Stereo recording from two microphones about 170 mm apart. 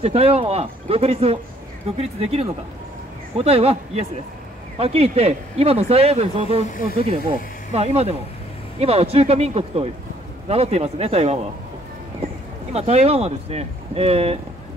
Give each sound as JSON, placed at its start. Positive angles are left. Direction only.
{"t": 0.0, "sound": "speech", "side_deg": -35}
{"t": 6.6, "sound": "speech", "side_deg": 55}
{"t": 7.2, "sound": "speech", "side_deg": -35}
{"t": 12.7, "sound": "speech", "side_deg": -40}